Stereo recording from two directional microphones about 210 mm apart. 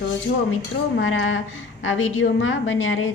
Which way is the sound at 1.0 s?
70° left (ahead or behind).